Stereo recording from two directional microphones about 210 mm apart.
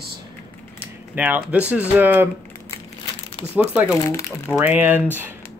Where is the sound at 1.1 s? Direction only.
10° right (ahead or behind).